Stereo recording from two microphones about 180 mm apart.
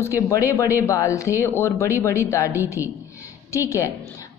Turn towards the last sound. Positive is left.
turn(degrees=15)  # may be behind; listen again after turning